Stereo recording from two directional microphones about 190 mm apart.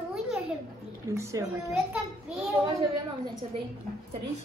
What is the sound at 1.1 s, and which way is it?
Speech, 15° right (ahead or behind).